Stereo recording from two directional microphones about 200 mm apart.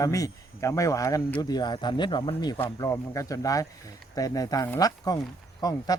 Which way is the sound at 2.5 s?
15° left (ahead or behind).